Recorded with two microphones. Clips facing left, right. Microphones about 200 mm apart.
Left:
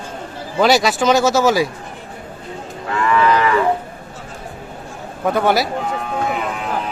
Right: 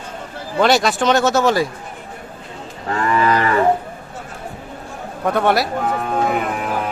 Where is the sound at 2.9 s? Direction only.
40° right (ahead or behind).